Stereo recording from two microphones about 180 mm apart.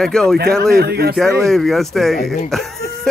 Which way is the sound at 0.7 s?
60° right (ahead or behind).